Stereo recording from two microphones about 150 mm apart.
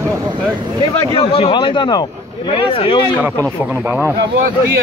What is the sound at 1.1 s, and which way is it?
Speech, 40° left (ahead or behind).